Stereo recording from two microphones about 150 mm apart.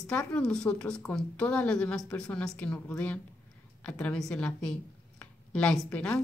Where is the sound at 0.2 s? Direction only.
5° left (ahead or behind).